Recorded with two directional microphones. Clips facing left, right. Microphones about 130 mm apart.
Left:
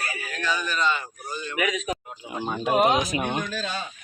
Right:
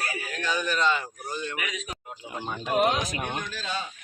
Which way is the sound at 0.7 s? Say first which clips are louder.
Right 2 dB; 90° right.